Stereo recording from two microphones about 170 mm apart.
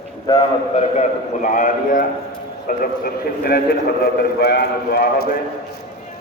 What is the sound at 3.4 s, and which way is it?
A man's voice, 65° left (ahead or behind).